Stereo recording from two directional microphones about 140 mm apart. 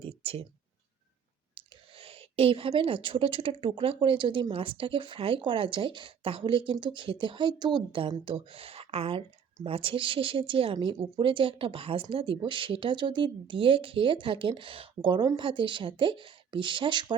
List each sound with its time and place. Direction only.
0.0 s clicking: 45° right (ahead or behind)
1.5 s a woman's voice: 40° right (ahead or behind)